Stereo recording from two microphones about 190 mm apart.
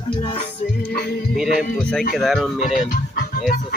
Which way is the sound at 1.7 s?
Centre (ahead or behind).